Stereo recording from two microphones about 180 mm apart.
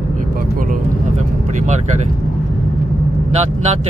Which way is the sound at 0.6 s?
50° right (ahead or behind).